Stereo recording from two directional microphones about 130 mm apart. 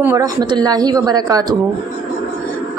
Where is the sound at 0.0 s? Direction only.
25° right (ahead or behind).